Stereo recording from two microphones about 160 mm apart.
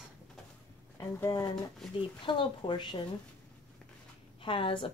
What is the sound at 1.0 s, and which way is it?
Speech, 20° left (ahead or behind).